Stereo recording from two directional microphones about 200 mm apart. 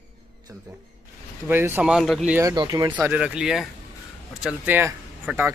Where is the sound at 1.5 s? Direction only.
10° right (ahead or behind).